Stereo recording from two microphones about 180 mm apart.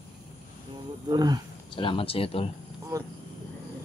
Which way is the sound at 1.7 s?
30° left (ahead or behind).